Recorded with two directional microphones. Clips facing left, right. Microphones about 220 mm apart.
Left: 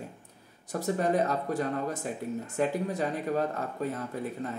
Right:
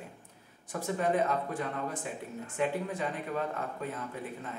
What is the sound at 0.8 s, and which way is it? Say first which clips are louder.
Speech: left 2 dB; 40° left (ahead or behind).